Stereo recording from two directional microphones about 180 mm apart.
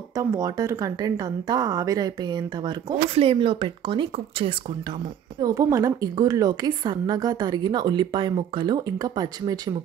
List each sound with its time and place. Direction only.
0.1 s a woman's voice: 15° right (ahead or behind)
5.4 s a woman's voice: 20° right (ahead or behind)